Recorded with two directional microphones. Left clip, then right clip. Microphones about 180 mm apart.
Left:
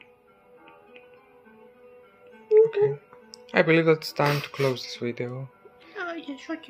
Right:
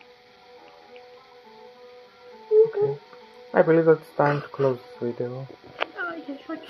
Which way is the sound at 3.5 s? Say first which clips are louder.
Right 2 dB; 35° left (ahead or behind).